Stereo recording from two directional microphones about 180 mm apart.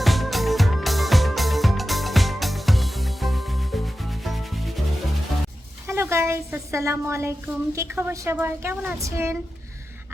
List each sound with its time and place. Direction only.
0.0 s music: centre (ahead or behind)
4.2 s rub: centre (ahead or behind)
5.9 s a woman's voice: 15° right (ahead or behind)